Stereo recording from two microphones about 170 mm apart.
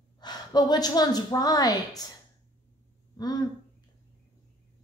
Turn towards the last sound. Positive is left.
turn(degrees=25)  # may be behind; listen again after turning